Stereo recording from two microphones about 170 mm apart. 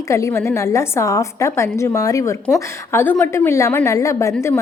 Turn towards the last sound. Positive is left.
turn(degrees=15)  # may be behind; listen again after turning